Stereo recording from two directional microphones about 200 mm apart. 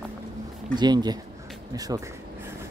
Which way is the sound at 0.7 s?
20° right (ahead or behind).